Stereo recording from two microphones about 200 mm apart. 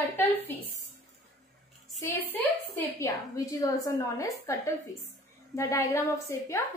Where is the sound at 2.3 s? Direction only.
10° left (ahead or behind).